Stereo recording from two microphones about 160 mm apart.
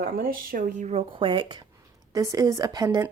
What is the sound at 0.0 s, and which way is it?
Speech, 65° right (ahead or behind).